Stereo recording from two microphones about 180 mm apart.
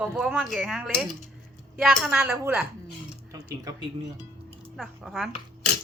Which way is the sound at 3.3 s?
20° right (ahead or behind).